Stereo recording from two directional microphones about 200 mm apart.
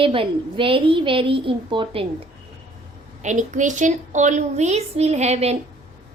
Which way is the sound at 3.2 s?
40° right (ahead or behind).